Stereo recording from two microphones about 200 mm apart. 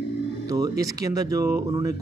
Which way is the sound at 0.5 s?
15° right (ahead or behind).